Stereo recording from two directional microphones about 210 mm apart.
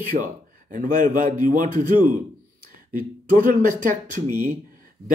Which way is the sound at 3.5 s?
40° right (ahead or behind).